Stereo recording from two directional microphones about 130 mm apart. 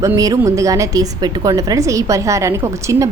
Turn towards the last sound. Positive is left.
turn(degrees=-25)  # may be behind; listen again after turning